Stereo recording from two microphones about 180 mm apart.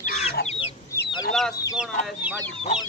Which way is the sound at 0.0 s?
35° left (ahead or behind).